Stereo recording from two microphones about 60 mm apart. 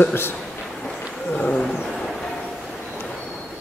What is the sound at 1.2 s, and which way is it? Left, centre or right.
Roaring cats, left.